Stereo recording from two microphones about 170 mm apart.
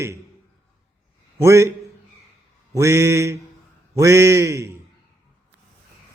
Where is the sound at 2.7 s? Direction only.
15° right (ahead or behind).